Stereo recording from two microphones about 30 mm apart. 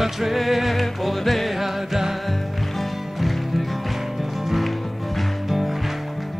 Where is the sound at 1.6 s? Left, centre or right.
Centre.